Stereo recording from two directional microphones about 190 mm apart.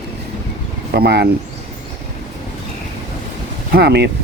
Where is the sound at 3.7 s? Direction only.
60° right (ahead or behind).